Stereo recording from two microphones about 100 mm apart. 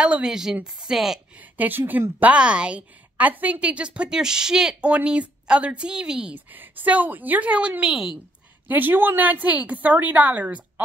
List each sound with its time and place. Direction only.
0.0 s a woman's voice: 10° right (ahead or behind)
1.3 s a woman's voice: 15° right (ahead or behind)
8.6 s a woman's voice: 20° right (ahead or behind)